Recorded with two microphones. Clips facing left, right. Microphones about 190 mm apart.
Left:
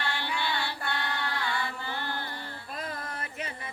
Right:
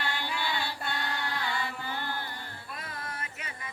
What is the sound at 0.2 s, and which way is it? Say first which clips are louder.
Chant: left 1 dB; 15° right (ahead or behind).